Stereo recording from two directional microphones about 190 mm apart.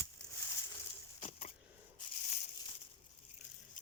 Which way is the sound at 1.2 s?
35° left (ahead or behind).